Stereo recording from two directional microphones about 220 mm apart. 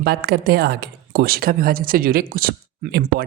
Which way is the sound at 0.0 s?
45° right (ahead or behind).